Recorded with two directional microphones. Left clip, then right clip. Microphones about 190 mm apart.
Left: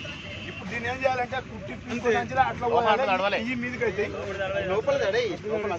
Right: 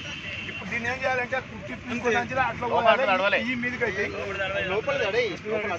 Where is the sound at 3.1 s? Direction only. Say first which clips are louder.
Right 2 dB; 50° left (ahead or behind).